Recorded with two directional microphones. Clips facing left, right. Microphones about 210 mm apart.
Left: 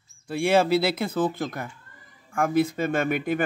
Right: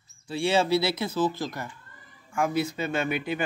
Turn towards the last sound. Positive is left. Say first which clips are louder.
# left 4 dB
turn(degrees=50)  # may be behind; listen again after turning